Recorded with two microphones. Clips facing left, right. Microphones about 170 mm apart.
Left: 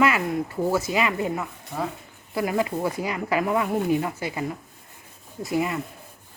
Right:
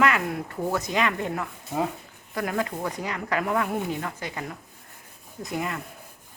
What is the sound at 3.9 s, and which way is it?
Speech, 10° left (ahead or behind).